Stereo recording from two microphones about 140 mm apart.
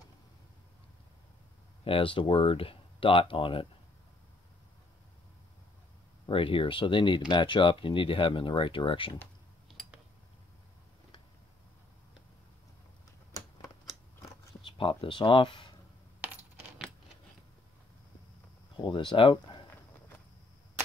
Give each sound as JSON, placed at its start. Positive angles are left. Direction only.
{"t": 1.9, "sound": "speech", "side_deg": 40}
{"t": 6.2, "sound": "speech", "side_deg": 40}
{"t": 9.7, "sound": "a sound", "side_deg": 0}
{"t": 14.7, "sound": "speech", "side_deg": 35}
{"t": 18.8, "sound": "speech", "side_deg": 35}